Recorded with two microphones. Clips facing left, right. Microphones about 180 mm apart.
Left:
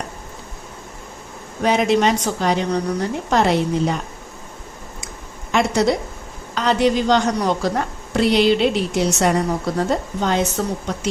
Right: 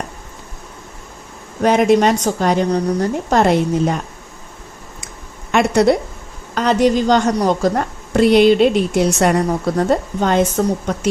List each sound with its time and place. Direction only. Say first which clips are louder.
1.6 s a woman's voice: right 4 dB; 50° right (ahead or behind)
5.5 s a woman's voice: right 4 dB; 55° right (ahead or behind)
6.5 s a woman's voice: right 3 dB; 45° right (ahead or behind)